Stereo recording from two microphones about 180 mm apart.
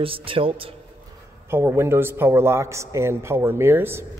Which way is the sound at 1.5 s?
15° right (ahead or behind).